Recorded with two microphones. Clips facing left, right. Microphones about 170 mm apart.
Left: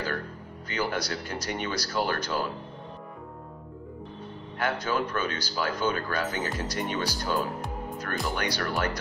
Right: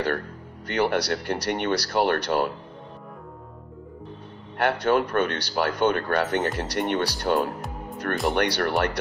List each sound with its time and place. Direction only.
0.7 s speech: 65° right (ahead or behind)
4.6 s speech: 65° right (ahead or behind)